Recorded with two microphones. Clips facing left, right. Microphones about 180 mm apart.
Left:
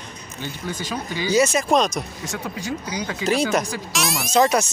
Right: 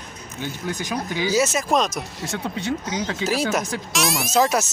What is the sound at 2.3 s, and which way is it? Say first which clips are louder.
Speech: right 5 dB; 25° right (ahead or behind).